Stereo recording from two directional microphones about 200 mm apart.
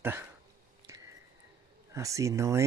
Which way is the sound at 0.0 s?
10° right (ahead or behind).